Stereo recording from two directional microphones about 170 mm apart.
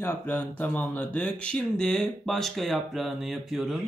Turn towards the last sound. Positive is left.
turn(degrees=0)  # may be behind; listen again after turning